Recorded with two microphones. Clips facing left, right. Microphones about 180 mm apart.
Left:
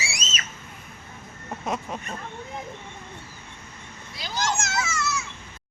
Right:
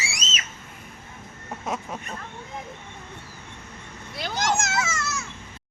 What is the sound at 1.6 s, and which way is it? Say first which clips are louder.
Speech: left 1 dB; 5° right (ahead or behind).